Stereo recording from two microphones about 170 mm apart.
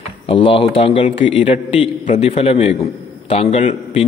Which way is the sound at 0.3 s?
30° left (ahead or behind).